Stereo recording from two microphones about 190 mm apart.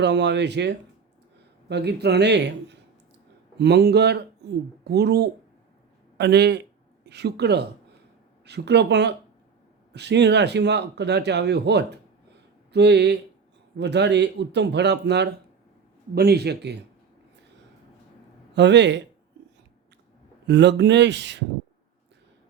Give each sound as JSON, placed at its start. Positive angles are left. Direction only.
{"t": 0.0, "sound": "speech", "side_deg": -65}
{"t": 18.5, "sound": "speech", "side_deg": -65}
{"t": 20.5, "sound": "speech", "side_deg": -65}